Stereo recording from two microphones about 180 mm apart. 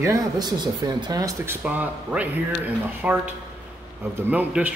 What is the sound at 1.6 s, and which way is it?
A man's voice, 10° right (ahead or behind).